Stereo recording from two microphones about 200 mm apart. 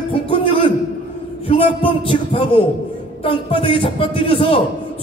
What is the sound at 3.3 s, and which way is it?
A man's voice, 25° left (ahead or behind).